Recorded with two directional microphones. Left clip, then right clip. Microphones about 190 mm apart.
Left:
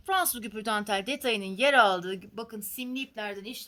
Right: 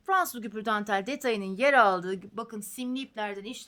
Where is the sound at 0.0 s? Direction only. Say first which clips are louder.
Right 1 dB; 25° right (ahead or behind).